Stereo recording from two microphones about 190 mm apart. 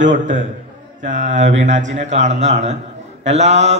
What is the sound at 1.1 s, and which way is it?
Mantra, 40° right (ahead or behind).